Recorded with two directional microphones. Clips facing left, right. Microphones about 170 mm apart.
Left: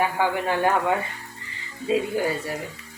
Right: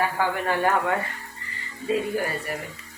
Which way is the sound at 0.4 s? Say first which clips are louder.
Even; 15° left (ahead or behind).